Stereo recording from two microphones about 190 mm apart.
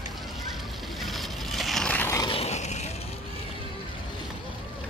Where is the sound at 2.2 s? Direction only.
30° left (ahead or behind).